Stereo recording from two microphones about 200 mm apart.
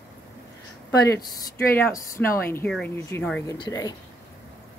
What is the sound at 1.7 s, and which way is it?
A woman's voice, 15° left (ahead or behind).